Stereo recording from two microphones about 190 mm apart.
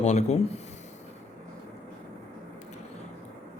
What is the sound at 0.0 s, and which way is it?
Speech, 35° left (ahead or behind).